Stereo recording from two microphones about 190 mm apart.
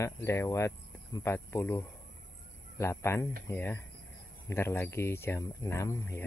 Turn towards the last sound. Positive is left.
turn(degrees=15)  # may be behind; listen again after turning